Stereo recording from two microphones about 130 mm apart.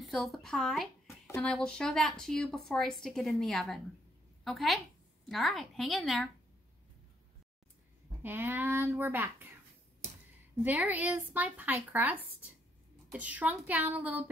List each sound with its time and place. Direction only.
0.0 s a woman's voice: centre (ahead or behind)
8.2 s speech: 15° right (ahead or behind)
10.6 s speech: 10° right (ahead or behind)